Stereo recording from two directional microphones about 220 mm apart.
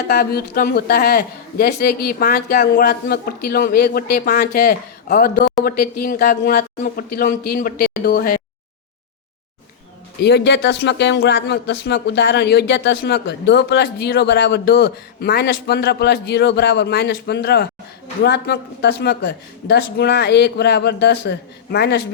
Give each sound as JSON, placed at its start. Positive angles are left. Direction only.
{"t": 0.1, "sound": "speech", "side_deg": 45}
{"t": 10.2, "sound": "speech", "side_deg": 50}